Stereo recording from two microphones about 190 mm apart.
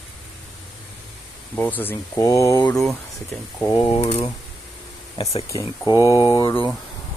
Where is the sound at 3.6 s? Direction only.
20° left (ahead or behind).